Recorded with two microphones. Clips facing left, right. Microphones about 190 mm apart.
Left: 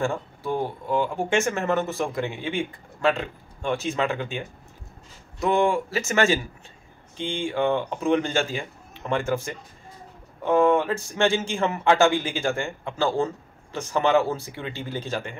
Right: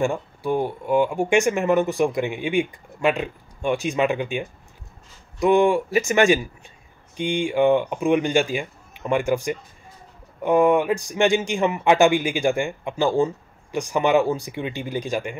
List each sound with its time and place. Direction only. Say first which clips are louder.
0.0 s speech: right 3 dB; 15° right (ahead or behind)